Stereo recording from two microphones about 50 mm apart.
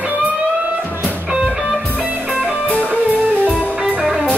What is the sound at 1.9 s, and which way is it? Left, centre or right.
Music, right.